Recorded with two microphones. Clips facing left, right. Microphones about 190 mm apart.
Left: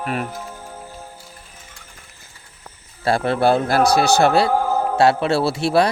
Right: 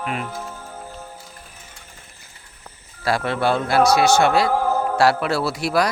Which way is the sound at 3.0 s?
30° left (ahead or behind).